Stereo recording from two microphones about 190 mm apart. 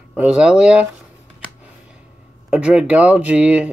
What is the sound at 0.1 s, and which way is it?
Speech, 5° right (ahead or behind).